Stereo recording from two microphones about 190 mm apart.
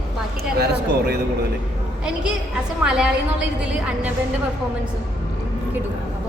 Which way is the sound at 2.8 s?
5° right (ahead or behind).